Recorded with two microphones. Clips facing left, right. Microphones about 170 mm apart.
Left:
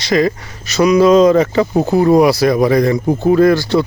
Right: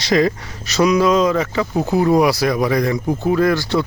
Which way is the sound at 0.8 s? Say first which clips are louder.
Left 5 dB; 20° left (ahead or behind).